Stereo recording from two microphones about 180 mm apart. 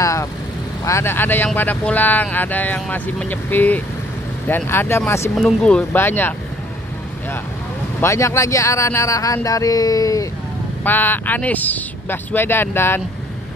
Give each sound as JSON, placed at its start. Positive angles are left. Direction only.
{"t": 0.0, "sound": "vehicle", "side_deg": 15}
{"t": 0.8, "sound": "speech", "side_deg": 15}
{"t": 5.3, "sound": "speech", "side_deg": 0}
{"t": 8.0, "sound": "speech", "side_deg": 15}